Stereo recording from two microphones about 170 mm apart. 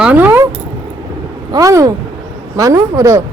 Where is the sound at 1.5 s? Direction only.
20° right (ahead or behind).